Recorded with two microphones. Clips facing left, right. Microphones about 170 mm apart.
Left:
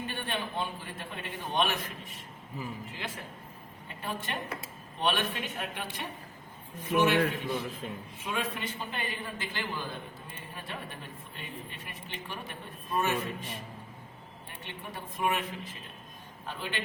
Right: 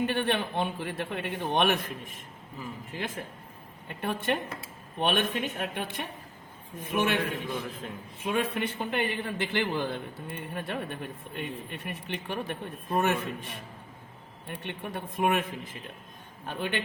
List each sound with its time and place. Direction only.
0.0 s a man's voice: 70° right (ahead or behind)
3.8 s a man's voice: 65° right (ahead or behind)
7.8 s a man's voice: centre (ahead or behind)
8.2 s speech: 55° right (ahead or behind)
14.6 s speech: 60° right (ahead or behind)